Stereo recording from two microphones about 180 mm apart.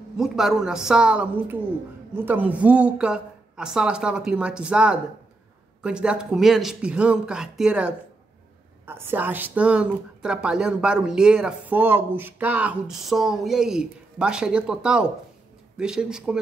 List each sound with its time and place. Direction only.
0.2 s a woman's voice: centre (ahead or behind)